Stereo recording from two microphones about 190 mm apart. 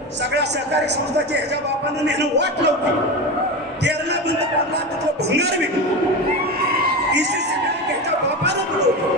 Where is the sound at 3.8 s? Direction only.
60° right (ahead or behind).